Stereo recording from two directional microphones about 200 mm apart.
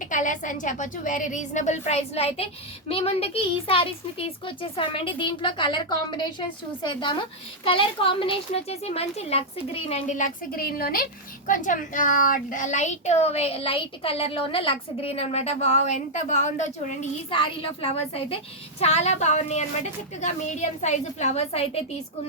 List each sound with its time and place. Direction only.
0.1 s a child's voice: 40° left (ahead or behind)